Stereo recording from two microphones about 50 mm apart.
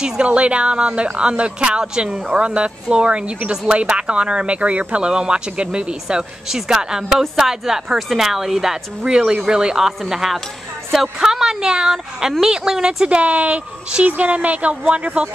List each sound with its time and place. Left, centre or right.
0.0 s a woman's voice: right